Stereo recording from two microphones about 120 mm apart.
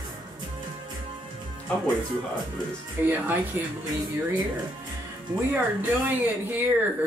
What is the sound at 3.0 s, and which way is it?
Speech, 15° right (ahead or behind).